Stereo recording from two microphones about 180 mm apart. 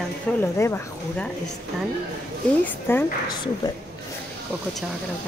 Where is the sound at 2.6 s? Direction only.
10° left (ahead or behind).